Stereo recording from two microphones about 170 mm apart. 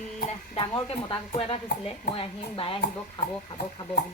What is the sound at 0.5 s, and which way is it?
Speech, 30° left (ahead or behind).